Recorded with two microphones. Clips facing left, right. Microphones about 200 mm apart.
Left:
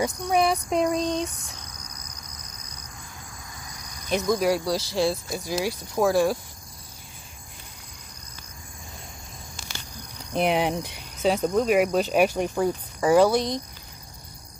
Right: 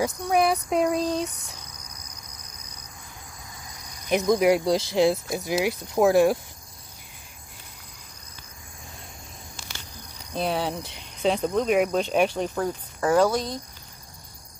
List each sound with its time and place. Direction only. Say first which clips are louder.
0.0 s a sound: even; centre (ahead or behind)
4.1 s speech: right 3 dB; 20° right (ahead or behind)
9.9 s speech: left 4 dB; 15° left (ahead or behind)